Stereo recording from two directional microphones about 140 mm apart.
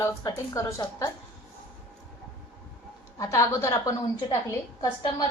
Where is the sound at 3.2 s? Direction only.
20° left (ahead or behind).